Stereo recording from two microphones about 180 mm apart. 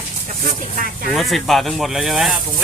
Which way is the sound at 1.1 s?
Centre (ahead or behind).